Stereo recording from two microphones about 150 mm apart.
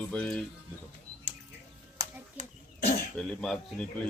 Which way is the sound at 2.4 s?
50° right (ahead or behind).